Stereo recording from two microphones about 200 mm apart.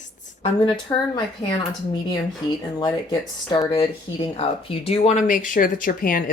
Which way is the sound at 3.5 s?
30° left (ahead or behind).